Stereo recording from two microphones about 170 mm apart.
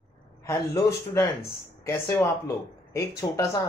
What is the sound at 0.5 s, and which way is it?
Speech, 20° left (ahead or behind).